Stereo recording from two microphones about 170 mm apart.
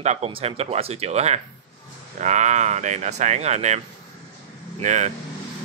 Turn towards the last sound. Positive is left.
turn(degrees=-45)  # may be behind; listen again after turning